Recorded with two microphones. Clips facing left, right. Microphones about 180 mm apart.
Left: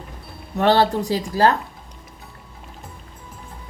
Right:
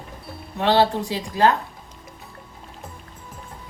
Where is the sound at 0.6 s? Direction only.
45° left (ahead or behind).